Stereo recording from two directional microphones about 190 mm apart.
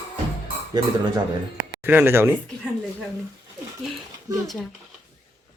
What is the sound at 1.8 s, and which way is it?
Speech, 10° right (ahead or behind).